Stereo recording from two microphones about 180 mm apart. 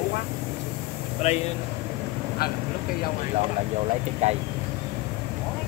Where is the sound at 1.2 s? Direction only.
35° left (ahead or behind).